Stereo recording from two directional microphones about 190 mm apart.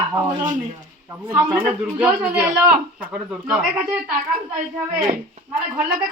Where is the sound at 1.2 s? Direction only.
20° right (ahead or behind).